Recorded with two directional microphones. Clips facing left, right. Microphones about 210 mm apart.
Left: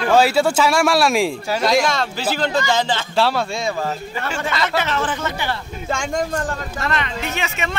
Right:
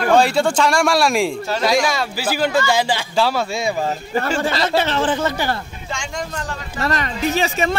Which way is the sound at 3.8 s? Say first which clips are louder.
Right 4 dB; 35° right (ahead or behind).